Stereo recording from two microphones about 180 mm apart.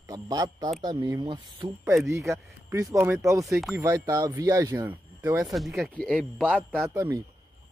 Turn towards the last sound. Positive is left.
turn(degrees=-15)  # may be behind; listen again after turning